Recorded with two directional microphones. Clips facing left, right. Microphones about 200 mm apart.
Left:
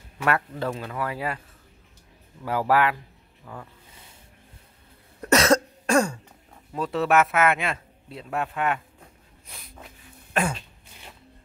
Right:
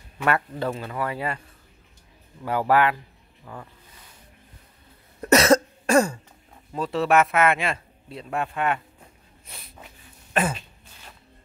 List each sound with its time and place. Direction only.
0.2 s a man's voice: centre (ahead or behind)
2.4 s a man's voice: centre (ahead or behind)
5.3 s cough: 5° right (ahead or behind)
6.7 s a man's voice: centre (ahead or behind)
9.5 s snort: centre (ahead or behind)
10.3 s throat clearing: 5° right (ahead or behind)